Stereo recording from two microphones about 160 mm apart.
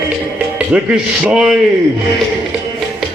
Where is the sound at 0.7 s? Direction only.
5° right (ahead or behind).